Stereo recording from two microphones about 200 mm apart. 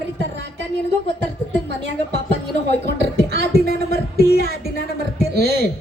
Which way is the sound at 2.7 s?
55° right (ahead or behind).